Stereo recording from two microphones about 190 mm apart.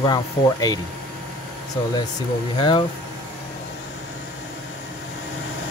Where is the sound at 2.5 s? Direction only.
25° left (ahead or behind).